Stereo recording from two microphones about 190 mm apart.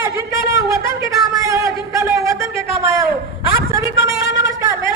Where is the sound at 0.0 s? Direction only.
15° right (ahead or behind).